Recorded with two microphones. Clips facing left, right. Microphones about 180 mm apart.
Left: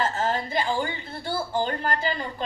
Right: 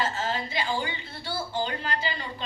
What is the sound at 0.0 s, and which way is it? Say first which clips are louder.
A woman's voice: left 4 dB; 50° left (ahead or behind).